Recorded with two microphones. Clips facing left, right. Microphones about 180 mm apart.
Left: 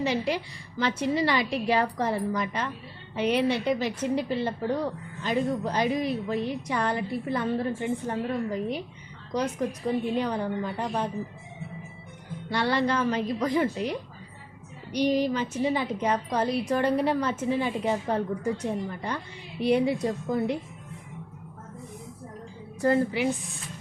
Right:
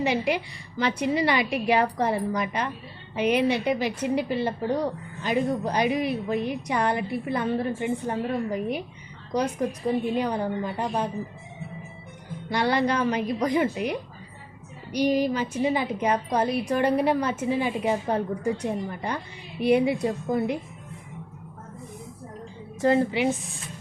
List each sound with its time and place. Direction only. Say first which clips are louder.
0.0 s a woman's voice: right 2 dB; 15° right (ahead or behind)
10.2 s a woman's voice: right 2 dB; 10° right (ahead or behind)
12.5 s a woman's voice: right 2 dB; 15° right (ahead or behind)
22.8 s a woman's voice: right 2 dB; 20° right (ahead or behind)